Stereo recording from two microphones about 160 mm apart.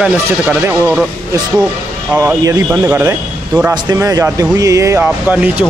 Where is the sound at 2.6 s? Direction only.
15° right (ahead or behind).